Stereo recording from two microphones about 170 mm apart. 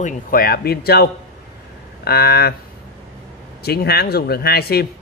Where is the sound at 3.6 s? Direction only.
70° left (ahead or behind).